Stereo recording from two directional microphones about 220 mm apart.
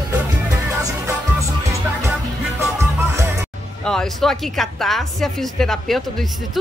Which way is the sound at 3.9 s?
Centre (ahead or behind).